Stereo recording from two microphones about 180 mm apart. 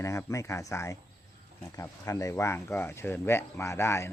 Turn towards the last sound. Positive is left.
turn(degrees=15)  # may be behind; listen again after turning